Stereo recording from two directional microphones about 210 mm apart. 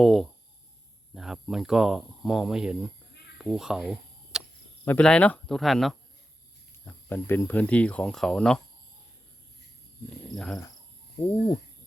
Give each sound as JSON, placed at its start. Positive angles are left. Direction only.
{"t": 0.0, "sound": "speech", "side_deg": 0}
{"t": 3.3, "sound": "a sound", "side_deg": -5}
{"t": 4.9, "sound": "speech", "side_deg": 5}
{"t": 7.1, "sound": "speech", "side_deg": 10}
{"t": 10.3, "sound": "speech", "side_deg": 5}
{"t": 11.2, "sound": "cricket", "side_deg": 25}